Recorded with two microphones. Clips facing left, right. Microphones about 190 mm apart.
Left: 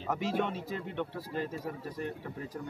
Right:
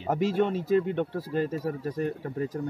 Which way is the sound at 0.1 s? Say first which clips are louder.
Right 7 dB; 40° right (ahead or behind).